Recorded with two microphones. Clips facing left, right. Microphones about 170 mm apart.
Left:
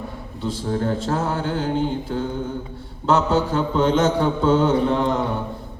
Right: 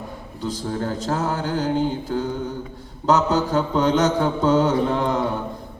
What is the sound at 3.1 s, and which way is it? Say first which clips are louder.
Mantra: even; 40° right (ahead or behind).